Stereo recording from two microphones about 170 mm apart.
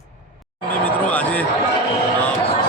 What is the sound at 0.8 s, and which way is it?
Speech, 10° left (ahead or behind).